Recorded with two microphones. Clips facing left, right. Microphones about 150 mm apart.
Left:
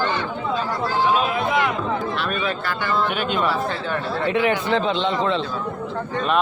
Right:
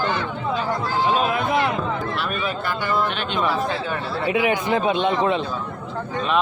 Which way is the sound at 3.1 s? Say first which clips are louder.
Left 2 dB; 5° left (ahead or behind).